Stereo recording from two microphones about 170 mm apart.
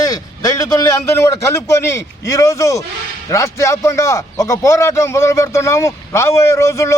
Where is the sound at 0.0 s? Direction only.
20° left (ahead or behind).